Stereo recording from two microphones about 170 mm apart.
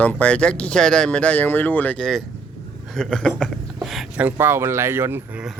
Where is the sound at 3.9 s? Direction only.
10° right (ahead or behind).